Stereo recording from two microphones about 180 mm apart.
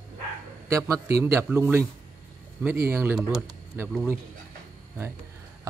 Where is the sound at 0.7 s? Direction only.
20° right (ahead or behind).